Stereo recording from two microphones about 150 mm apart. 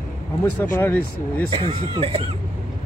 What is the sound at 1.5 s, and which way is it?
Speech, 40° right (ahead or behind).